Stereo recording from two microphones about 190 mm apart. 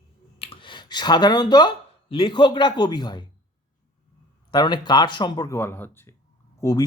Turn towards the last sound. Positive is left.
turn(degrees=20)  # may be behind; listen again after turning